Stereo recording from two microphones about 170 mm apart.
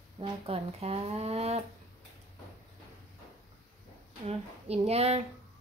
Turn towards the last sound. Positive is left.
turn(degrees=-40)  # may be behind; listen again after turning